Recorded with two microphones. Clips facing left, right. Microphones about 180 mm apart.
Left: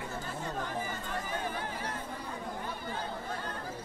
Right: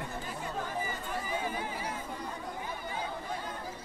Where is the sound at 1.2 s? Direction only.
10° right (ahead or behind).